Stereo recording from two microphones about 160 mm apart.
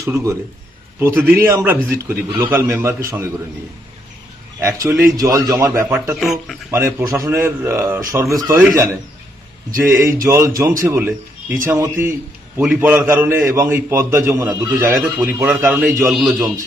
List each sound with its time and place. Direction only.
0.0 s a man's voice: 20° right (ahead or behind)
4.6 s a man's voice: 20° right (ahead or behind)
6.1 s speech: centre (ahead or behind)
6.7 s a man's voice: 15° right (ahead or behind)
10.2 s a man's voice: 20° right (ahead or behind)
16.0 s speech: centre (ahead or behind)